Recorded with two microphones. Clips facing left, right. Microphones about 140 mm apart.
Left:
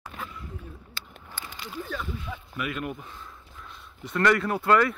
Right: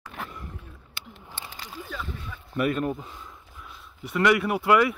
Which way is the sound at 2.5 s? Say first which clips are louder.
Right 8 dB; 40° right (ahead or behind).